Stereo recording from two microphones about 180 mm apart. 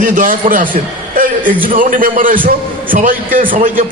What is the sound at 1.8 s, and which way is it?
Speech, 50° right (ahead or behind).